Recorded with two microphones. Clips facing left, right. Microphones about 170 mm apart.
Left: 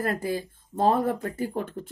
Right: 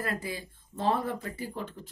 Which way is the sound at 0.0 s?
45° left (ahead or behind).